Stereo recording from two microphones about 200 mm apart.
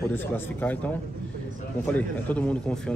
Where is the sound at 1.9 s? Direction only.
5° left (ahead or behind).